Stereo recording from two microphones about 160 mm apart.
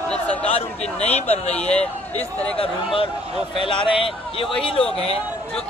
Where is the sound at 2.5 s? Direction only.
35° left (ahead or behind).